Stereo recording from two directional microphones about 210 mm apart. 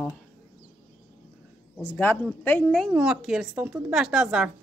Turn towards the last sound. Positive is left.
turn(degrees=-5)  # may be behind; listen again after turning